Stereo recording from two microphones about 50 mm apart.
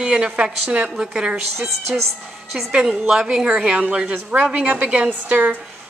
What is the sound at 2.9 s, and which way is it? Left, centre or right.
A woman's voice, centre.